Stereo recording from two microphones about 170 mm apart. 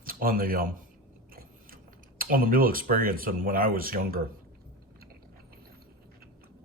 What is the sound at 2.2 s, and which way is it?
Speech, 60° right (ahead or behind).